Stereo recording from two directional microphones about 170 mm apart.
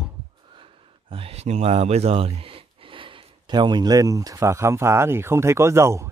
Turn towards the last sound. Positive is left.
turn(degrees=-15)  # may be behind; listen again after turning